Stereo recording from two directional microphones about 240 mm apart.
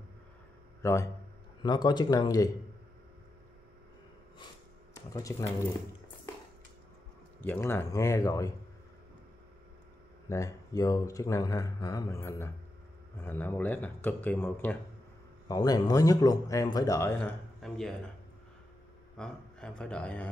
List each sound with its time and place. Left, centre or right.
0.8 s speech: centre
5.1 s speech: centre
7.3 s speech: centre
10.3 s speech: centre
19.1 s speech: centre